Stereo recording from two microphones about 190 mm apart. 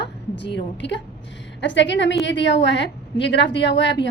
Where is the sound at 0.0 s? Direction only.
65° left (ahead or behind).